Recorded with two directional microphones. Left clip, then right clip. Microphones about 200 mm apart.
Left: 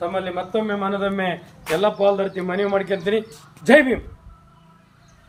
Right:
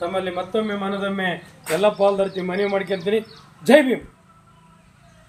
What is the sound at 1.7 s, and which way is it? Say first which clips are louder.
Speech: even; 30° right (ahead or behind).